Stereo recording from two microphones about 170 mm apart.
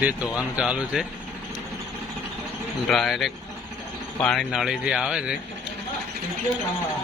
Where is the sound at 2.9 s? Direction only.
Centre (ahead or behind).